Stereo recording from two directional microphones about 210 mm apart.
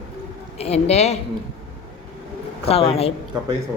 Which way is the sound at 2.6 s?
30° left (ahead or behind).